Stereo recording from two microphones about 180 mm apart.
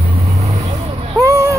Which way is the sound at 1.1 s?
20° right (ahead or behind).